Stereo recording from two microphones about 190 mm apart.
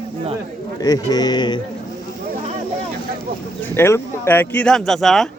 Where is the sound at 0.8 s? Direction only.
20° left (ahead or behind).